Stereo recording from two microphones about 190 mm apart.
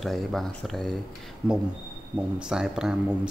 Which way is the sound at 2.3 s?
5° right (ahead or behind).